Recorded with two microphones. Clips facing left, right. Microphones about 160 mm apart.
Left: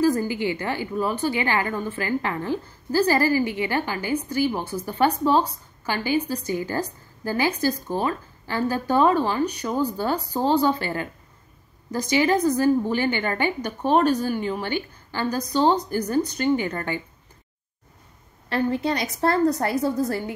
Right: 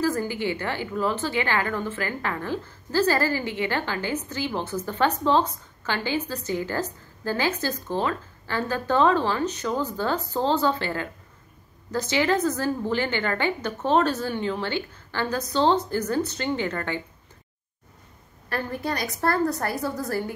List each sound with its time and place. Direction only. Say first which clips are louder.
0.0 s a woman's voice: left 4 dB; 15° left (ahead or behind)
18.5 s a woman's voice: left 5 dB; 20° left (ahead or behind)